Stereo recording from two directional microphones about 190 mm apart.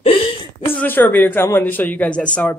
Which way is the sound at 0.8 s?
10° left (ahead or behind).